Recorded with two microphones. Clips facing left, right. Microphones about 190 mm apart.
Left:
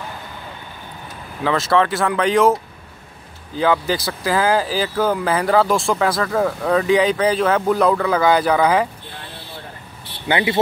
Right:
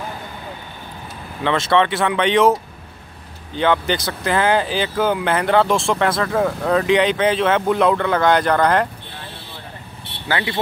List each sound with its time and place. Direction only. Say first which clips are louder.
1.4 s speech: even; centre (ahead or behind)
10.2 s speech: left 4 dB; 20° left (ahead or behind)